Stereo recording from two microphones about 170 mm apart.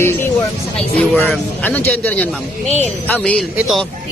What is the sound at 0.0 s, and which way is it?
A man's voice, 15° left (ahead or behind).